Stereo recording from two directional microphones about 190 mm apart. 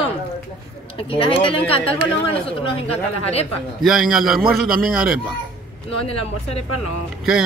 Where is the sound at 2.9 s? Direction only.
35° left (ahead or behind).